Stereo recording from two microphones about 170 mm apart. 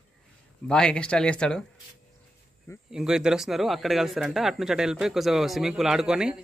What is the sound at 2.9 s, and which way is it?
Speech, 5° right (ahead or behind).